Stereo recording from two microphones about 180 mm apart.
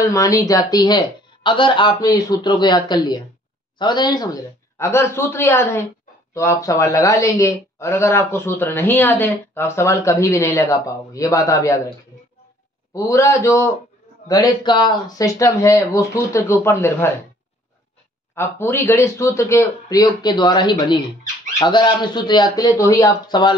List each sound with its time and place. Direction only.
0.1 s a man's voice: 20° left (ahead or behind)
12.9 s speech: 15° left (ahead or behind)
18.3 s a man's voice: 15° left (ahead or behind)